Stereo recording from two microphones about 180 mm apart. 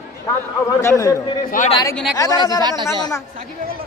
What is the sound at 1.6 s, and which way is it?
Speech, 45° left (ahead or behind).